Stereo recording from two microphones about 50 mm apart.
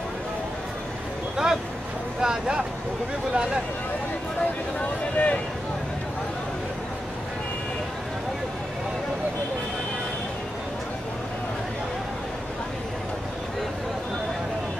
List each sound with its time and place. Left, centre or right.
1.3 s vehicle: centre
2.2 s speech: centre
4.7 s speech: left